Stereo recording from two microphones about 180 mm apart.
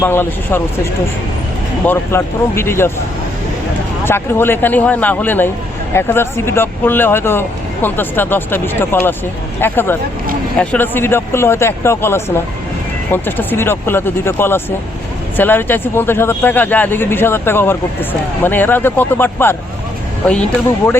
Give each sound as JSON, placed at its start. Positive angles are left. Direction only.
{"t": 0.0, "sound": "speech", "side_deg": 10}
{"t": 1.9, "sound": "speech", "side_deg": 15}
{"t": 4.0, "sound": "speech", "side_deg": 10}
{"t": 20.7, "sound": "speech", "side_deg": 15}